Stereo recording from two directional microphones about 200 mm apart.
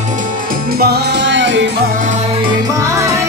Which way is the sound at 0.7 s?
55° right (ahead or behind).